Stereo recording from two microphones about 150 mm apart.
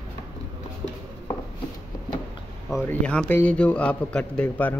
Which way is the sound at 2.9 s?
10° left (ahead or behind).